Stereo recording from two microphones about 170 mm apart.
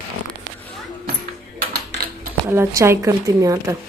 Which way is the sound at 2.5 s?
15° right (ahead or behind).